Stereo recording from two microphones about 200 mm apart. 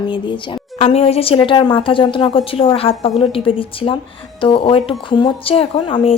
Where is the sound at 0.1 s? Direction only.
25° left (ahead or behind).